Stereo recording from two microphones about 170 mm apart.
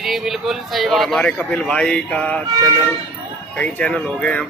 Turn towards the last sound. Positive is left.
turn(degrees=5)  # may be behind; listen again after turning